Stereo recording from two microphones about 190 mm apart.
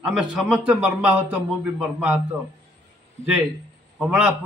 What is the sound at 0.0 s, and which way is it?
A man's voice, 5° right (ahead or behind).